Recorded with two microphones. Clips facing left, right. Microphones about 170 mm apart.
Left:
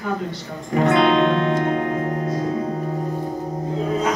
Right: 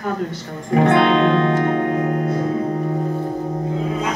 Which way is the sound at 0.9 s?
60° right (ahead or behind).